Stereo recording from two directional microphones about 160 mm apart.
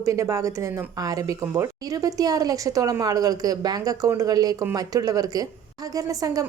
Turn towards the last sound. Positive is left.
turn(degrees=-20)  # may be behind; listen again after turning